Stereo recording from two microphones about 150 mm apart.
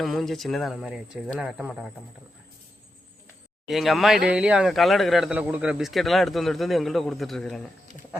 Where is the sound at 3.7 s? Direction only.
Centre (ahead or behind).